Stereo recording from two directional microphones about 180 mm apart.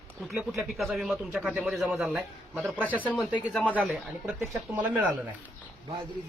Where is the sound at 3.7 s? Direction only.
5° right (ahead or behind).